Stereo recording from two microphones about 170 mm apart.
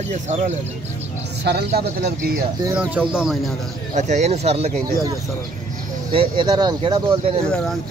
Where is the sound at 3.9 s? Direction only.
45° right (ahead or behind).